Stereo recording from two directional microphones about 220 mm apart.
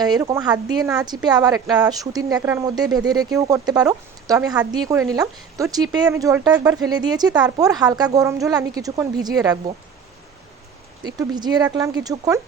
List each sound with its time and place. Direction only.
0.0 s speech: 20° right (ahead or behind)
11.0 s speech: 20° right (ahead or behind)